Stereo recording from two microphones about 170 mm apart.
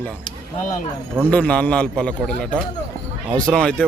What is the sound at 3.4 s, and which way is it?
Speech, 5° left (ahead or behind).